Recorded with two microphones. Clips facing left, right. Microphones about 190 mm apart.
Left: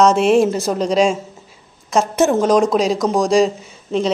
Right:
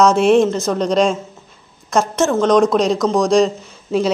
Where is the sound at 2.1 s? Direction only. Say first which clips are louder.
Left 2 dB; 15° left (ahead or behind).